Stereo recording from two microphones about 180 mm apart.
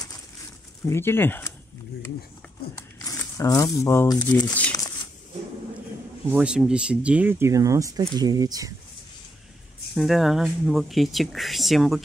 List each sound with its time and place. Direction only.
0.8 s speech: 15° left (ahead or behind)
2.7 s speech: 15° left (ahead or behind)
6.2 s speech: 5° right (ahead or behind)
9.9 s speech: centre (ahead or behind)